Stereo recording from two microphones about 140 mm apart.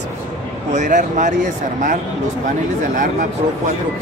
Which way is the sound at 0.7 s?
60° right (ahead or behind).